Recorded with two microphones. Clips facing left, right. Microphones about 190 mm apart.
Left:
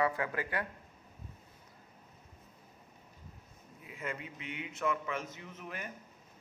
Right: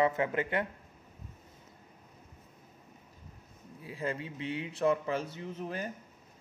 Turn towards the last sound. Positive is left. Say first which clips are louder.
# right 7 dB
turn(degrees=-30)  # may be behind; listen again after turning